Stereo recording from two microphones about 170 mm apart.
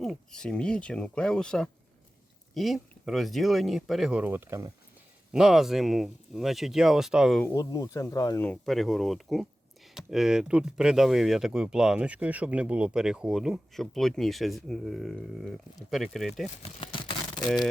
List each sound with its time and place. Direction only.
0.0 s speech: 5° left (ahead or behind); by 4.7 s 15° right (ahead or behind)
5.3 s speech: 5° right (ahead or behind)
7.4 s speech: 20° left (ahead or behind)
8.4 s speech: centre (ahead or behind)
16.8 s a sound: 30° left (ahead or behind)